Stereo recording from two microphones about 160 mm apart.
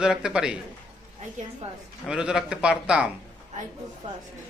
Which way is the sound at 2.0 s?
5° right (ahead or behind).